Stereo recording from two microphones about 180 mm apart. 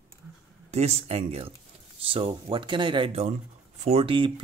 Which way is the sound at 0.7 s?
35° right (ahead or behind).